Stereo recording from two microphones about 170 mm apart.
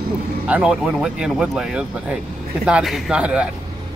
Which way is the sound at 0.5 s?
5° right (ahead or behind).